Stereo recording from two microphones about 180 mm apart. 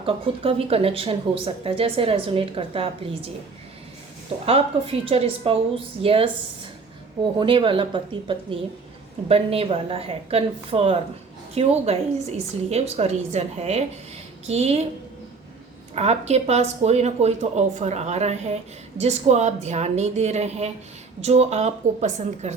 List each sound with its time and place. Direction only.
0.0 s speech: 30° right (ahead or behind)
4.4 s speech: 30° right (ahead or behind)
7.3 s a woman's voice: 30° right (ahead or behind)
16.0 s speech: 35° right (ahead or behind)